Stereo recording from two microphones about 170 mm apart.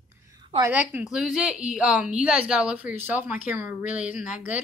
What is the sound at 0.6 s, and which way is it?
Speech, 10° right (ahead or behind).